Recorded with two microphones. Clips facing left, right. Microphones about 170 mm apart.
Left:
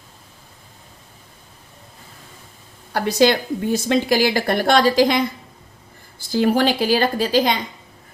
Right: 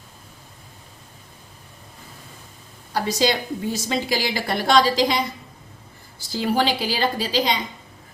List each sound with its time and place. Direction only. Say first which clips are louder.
2.9 s a woman's voice: left 5 dB; 60° left (ahead or behind)